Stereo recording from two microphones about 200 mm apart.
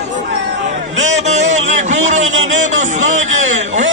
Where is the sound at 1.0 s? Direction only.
35° right (ahead or behind).